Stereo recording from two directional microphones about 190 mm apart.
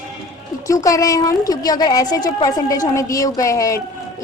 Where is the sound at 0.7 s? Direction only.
15° left (ahead or behind).